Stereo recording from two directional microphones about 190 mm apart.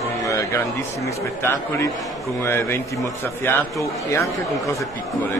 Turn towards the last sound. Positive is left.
turn(degrees=15)  # may be behind; listen again after turning